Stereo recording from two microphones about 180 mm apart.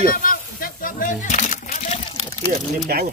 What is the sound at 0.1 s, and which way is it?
Music, 50° left (ahead or behind).